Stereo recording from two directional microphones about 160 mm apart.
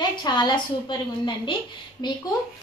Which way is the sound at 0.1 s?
30° left (ahead or behind).